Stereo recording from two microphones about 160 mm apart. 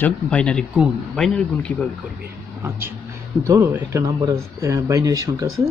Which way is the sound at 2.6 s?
15° right (ahead or behind).